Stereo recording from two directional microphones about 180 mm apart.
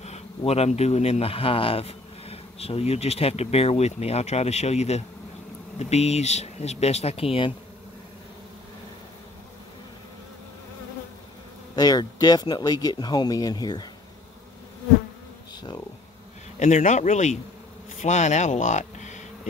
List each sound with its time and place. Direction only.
0.4 s a man's voice: 35° left (ahead or behind)
11.7 s speech: 20° left (ahead or behind)
16.5 s a man's voice: 40° left (ahead or behind)